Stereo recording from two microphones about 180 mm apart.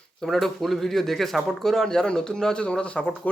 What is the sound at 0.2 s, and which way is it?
Speech, centre (ahead or behind).